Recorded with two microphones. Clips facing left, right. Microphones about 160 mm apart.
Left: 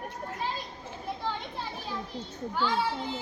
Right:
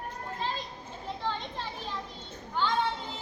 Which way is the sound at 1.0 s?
10° left (ahead or behind).